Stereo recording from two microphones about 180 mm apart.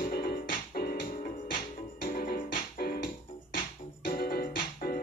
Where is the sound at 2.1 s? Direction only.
55° left (ahead or behind).